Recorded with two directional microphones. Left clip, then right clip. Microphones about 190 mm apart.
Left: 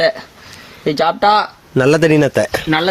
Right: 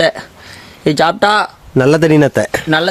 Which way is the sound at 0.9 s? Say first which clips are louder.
Right 1 dB; 50° right (ahead or behind).